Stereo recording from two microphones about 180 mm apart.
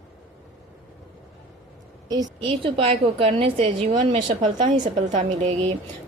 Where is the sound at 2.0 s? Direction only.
25° right (ahead or behind).